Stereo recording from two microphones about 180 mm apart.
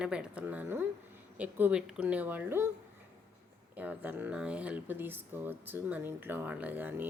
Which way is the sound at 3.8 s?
10° right (ahead or behind).